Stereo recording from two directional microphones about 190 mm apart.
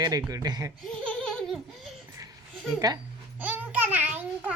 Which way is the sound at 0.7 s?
5° left (ahead or behind).